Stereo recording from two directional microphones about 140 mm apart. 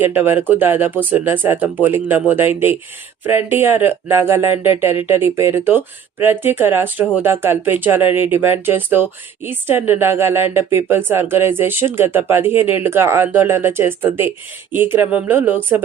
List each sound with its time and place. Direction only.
0.0 s speech: 15° right (ahead or behind)